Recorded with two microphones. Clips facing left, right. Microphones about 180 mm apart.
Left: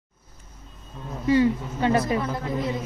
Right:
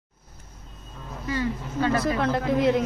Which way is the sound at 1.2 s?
20° left (ahead or behind).